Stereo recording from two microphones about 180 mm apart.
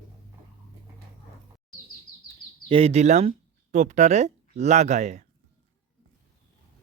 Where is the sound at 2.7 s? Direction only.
35° right (ahead or behind).